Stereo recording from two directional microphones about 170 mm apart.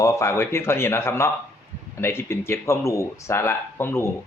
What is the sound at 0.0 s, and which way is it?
Speech, 15° left (ahead or behind).